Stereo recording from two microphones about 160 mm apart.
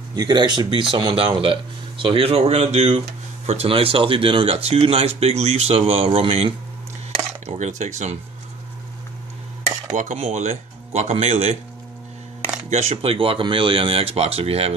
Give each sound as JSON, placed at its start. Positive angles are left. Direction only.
{"t": 0.1, "sound": "speech", "side_deg": -25}
{"t": 9.9, "sound": "speech", "side_deg": -45}
{"t": 12.6, "sound": "speech", "side_deg": -45}